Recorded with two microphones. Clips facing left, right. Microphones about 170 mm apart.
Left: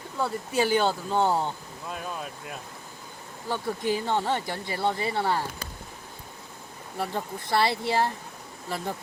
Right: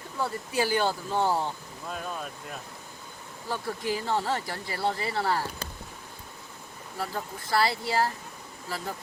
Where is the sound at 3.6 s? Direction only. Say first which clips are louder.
Left 3 dB; 25° left (ahead or behind).